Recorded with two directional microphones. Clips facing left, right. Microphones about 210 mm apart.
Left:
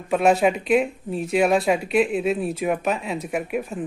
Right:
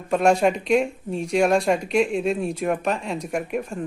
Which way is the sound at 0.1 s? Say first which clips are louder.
Even; 5° left (ahead or behind).